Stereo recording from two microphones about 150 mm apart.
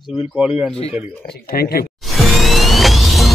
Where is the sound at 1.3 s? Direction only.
90° left.